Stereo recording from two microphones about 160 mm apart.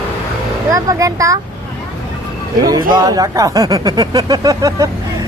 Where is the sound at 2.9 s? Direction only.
20° right (ahead or behind).